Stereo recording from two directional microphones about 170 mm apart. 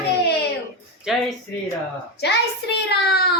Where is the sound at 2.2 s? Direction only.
80° left.